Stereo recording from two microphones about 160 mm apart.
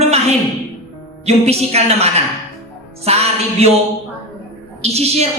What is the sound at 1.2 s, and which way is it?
A woman's voice, 40° right (ahead or behind).